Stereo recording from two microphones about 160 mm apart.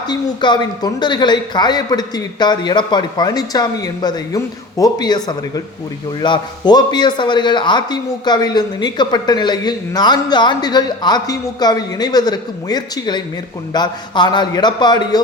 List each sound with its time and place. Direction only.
0.1 s a man's voice: 25° left (ahead or behind)